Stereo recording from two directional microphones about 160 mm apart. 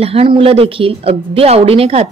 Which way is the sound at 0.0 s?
35° right (ahead or behind).